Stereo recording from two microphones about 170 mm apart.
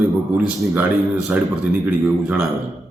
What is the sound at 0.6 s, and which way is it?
A woman's voice, 5° right (ahead or behind).